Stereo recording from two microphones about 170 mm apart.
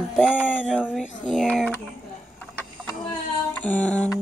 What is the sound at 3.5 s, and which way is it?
Music, 10° left (ahead or behind).